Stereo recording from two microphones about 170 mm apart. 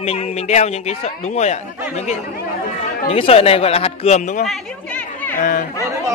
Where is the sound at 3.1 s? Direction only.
35° left (ahead or behind).